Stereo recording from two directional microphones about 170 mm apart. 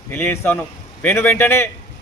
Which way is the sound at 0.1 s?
10° left (ahead or behind).